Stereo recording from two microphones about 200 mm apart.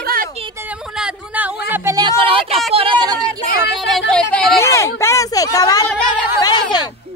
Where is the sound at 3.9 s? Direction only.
Centre (ahead or behind).